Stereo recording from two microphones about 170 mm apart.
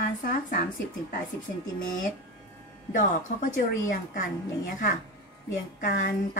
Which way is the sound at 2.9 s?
50° left (ahead or behind).